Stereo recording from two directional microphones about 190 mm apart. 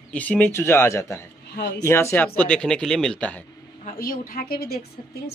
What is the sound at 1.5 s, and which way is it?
Speech, 60° left (ahead or behind).